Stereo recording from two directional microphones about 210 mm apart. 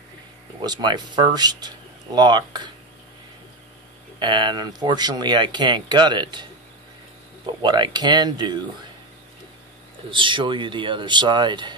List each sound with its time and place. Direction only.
0.7 s speech: 20° right (ahead or behind)
4.2 s speech: 20° right (ahead or behind)
7.4 s speech: 20° right (ahead or behind)
10.1 s speech: 25° right (ahead or behind)